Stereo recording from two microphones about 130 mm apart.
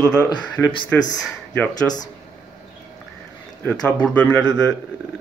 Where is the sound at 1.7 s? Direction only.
30° left (ahead or behind).